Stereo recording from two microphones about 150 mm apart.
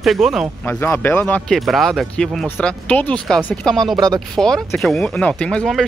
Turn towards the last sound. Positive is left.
turn(degrees=5)  # may be behind; listen again after turning